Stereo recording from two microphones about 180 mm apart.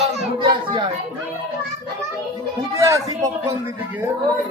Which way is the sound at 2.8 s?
20° right (ahead or behind).